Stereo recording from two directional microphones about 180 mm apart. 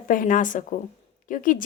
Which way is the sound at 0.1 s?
50° left (ahead or behind).